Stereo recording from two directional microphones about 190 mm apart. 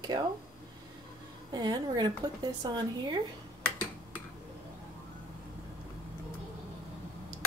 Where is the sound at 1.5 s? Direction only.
20° right (ahead or behind).